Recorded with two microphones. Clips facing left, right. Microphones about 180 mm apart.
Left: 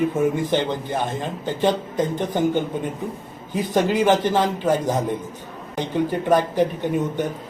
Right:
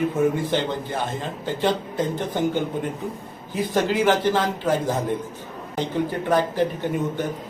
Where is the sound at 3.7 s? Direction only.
15° left (ahead or behind).